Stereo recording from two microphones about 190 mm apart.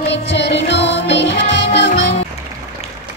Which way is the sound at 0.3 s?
65° left (ahead or behind).